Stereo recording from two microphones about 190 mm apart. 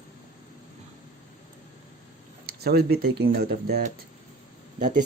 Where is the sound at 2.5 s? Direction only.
55° right (ahead or behind).